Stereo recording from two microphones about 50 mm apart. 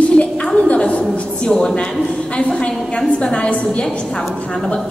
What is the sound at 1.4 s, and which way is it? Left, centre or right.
Speech, centre.